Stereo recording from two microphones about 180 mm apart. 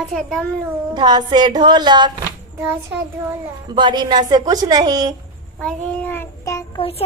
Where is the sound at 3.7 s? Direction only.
25° right (ahead or behind).